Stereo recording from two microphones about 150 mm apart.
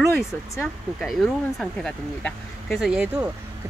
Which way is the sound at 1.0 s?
Centre (ahead or behind).